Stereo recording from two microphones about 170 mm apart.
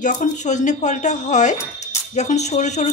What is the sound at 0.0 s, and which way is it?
Speech, 45° left (ahead or behind).